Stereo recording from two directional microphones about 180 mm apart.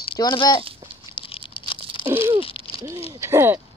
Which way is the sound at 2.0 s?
15° right (ahead or behind).